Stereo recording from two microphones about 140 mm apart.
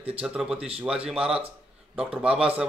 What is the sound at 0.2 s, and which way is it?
A man's voice, 5° right (ahead or behind).